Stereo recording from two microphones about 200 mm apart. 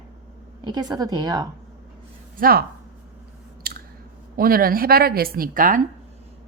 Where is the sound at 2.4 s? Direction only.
50° right (ahead or behind).